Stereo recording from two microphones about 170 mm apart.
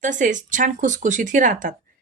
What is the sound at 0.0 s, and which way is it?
Speech, 50° right (ahead or behind).